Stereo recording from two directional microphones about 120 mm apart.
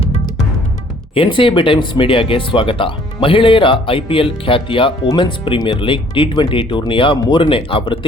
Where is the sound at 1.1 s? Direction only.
45° left (ahead or behind).